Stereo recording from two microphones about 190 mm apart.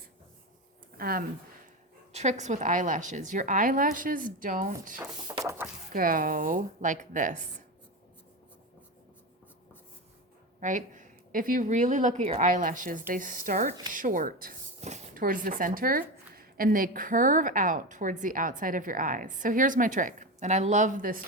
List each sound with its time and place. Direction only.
0.9 s speech: 50° right (ahead or behind)
2.1 s speech: 40° right (ahead or behind)
5.4 s a sound: 15° right (ahead or behind)
5.9 s speech: 45° right (ahead or behind)
10.6 s speech: 40° right (ahead or behind)